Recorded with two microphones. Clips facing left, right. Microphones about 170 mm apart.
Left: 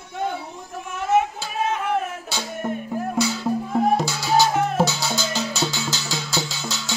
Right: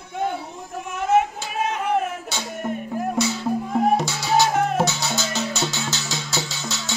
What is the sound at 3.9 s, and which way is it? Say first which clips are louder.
Music: even; 25° right (ahead or behind).